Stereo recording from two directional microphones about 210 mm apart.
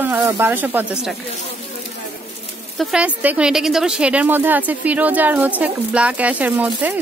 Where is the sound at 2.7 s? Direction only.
5° right (ahead or behind).